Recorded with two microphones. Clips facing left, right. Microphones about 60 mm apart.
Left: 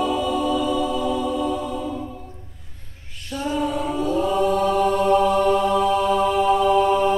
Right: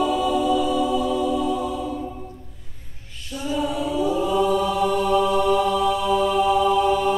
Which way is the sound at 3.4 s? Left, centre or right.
Left.